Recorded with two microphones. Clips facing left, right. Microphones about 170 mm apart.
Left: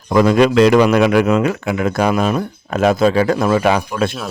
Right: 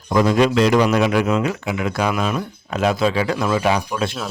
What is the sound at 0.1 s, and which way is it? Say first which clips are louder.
Speech: left 4 dB; 75° left (ahead or behind).